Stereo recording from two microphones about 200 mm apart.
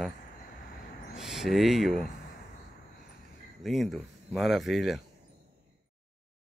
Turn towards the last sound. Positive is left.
turn(degrees=0)  # may be behind; listen again after turning